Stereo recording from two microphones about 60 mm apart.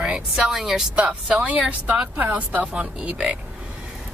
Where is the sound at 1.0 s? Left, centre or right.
Centre.